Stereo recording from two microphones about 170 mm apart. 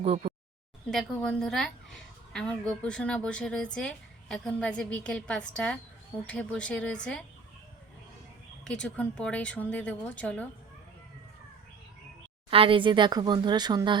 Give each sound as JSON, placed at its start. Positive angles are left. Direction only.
{"t": 0.0, "sound": "speech", "side_deg": -35}
{"t": 0.9, "sound": "speech", "side_deg": 5}
{"t": 8.6, "sound": "speech", "side_deg": 5}
{"t": 12.5, "sound": "speech", "side_deg": -30}